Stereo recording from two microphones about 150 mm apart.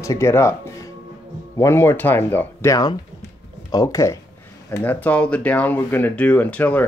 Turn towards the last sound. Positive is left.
turn(degrees=10)  # may be behind; listen again after turning